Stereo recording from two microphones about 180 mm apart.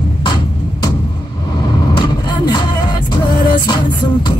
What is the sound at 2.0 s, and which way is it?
Music, 25° left (ahead or behind).